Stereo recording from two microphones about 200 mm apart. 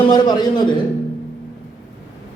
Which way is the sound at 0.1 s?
20° left (ahead or behind).